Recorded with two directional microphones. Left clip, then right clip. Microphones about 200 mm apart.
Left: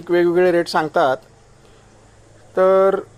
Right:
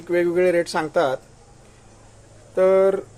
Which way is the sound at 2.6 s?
20° left (ahead or behind).